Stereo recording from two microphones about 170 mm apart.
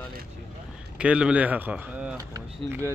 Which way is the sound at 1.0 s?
5° right (ahead or behind).